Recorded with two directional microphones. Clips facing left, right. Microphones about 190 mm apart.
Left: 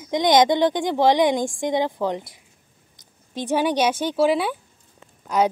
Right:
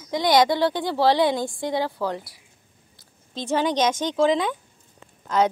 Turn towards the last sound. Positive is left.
turn(degrees=10)  # may be behind; listen again after turning